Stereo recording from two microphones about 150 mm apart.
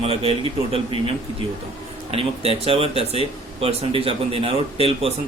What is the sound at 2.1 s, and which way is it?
Speech, 40° right (ahead or behind).